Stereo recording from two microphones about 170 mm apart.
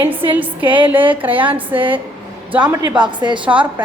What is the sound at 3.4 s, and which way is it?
Speech, 10° right (ahead or behind).